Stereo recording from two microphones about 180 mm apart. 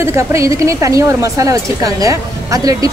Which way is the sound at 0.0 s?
15° right (ahead or behind).